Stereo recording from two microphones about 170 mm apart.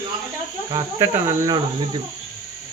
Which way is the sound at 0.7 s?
20° right (ahead or behind).